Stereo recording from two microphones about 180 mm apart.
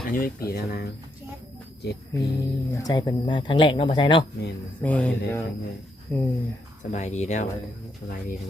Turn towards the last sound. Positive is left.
turn(degrees=40)  # may be behind; listen again after turning